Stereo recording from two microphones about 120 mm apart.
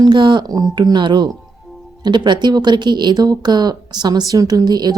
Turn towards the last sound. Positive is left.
turn(degrees=-35)  # may be behind; listen again after turning